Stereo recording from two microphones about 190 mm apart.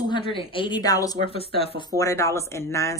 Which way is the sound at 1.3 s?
30° left (ahead or behind).